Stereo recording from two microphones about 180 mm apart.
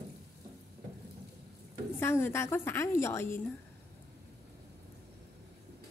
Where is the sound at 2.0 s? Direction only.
15° left (ahead or behind).